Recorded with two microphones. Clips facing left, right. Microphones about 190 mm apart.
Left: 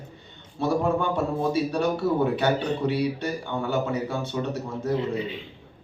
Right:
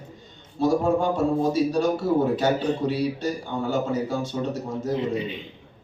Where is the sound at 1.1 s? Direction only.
60° left (ahead or behind).